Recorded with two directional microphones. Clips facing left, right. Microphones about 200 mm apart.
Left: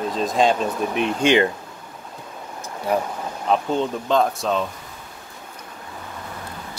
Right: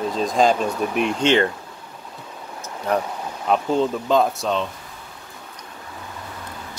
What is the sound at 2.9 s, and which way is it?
Speech, 10° left (ahead or behind).